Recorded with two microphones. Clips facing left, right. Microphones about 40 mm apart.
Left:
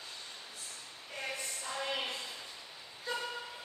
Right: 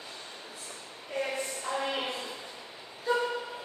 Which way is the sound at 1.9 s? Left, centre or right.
Right.